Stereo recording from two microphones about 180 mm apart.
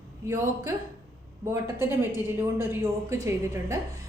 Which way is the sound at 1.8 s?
15° right (ahead or behind).